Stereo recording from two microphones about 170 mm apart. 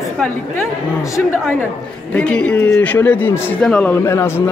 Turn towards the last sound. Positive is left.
turn(degrees=15)  # may be behind; listen again after turning